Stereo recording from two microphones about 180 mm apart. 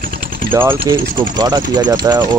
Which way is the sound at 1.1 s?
25° right (ahead or behind).